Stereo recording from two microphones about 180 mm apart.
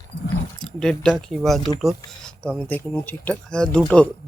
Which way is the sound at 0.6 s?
5° left (ahead or behind).